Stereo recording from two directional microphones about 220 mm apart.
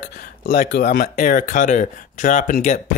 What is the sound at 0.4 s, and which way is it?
Speech, 45° left (ahead or behind).